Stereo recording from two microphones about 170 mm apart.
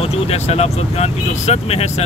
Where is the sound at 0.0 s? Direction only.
35° left (ahead or behind).